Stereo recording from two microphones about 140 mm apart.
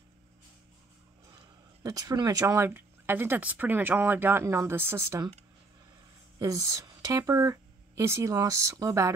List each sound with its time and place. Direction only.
1.8 s speech: 25° right (ahead or behind)
6.4 s speech: 25° right (ahead or behind)